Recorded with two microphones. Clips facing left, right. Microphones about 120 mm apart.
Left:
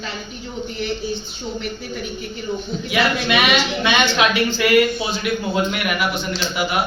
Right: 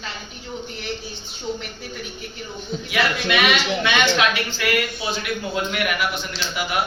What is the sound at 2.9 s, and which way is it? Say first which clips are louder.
A woman's voice: left 3 dB; 15° left (ahead or behind).